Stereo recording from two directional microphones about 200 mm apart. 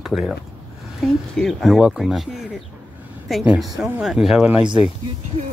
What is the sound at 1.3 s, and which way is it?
Speech, centre (ahead or behind).